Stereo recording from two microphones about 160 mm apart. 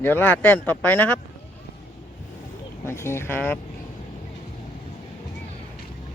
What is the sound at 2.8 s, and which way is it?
Speech, 15° left (ahead or behind).